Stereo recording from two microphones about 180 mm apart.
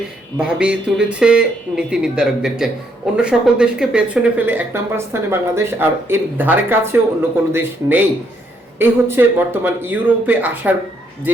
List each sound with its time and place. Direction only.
0.3 s speech: 5° right (ahead or behind)